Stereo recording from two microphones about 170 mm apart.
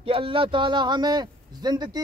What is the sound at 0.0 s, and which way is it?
A man's voice, 35° right (ahead or behind).